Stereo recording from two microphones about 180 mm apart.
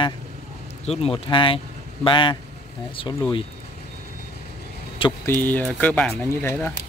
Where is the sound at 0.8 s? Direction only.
30° left (ahead or behind).